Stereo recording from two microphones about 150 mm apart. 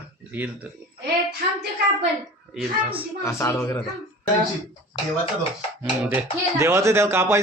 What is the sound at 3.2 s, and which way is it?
Speech, 20° left (ahead or behind).